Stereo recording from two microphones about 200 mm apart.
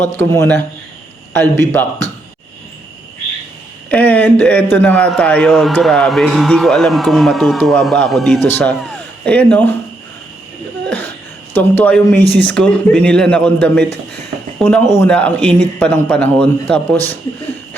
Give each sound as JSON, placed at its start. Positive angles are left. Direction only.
{"t": 0.2, "sound": "a man's voice", "side_deg": 10}
{"t": 3.8, "sound": "a man's voice", "side_deg": 10}
{"t": 10.8, "sound": "a sound", "side_deg": 10}
{"t": 11.5, "sound": "a man's voice", "side_deg": 10}
{"t": 12.2, "sound": "speech", "side_deg": -60}
{"t": 12.5, "sound": "a man's voice", "side_deg": 5}